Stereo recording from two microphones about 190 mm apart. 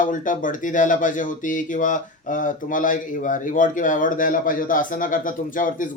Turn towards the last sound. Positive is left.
turn(degrees=45)  # may be behind; listen again after turning